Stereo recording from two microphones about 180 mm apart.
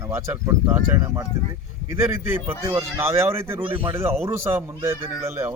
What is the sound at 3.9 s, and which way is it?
Speech, 15° right (ahead or behind).